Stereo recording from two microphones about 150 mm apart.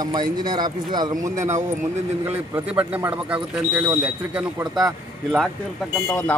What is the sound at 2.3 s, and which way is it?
Speech, 10° right (ahead or behind).